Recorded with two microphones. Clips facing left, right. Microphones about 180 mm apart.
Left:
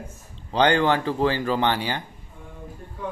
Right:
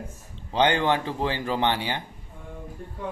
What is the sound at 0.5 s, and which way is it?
Speech, 20° right (ahead or behind).